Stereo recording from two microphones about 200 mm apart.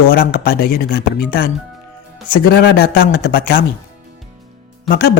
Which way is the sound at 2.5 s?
55° left (ahead or behind).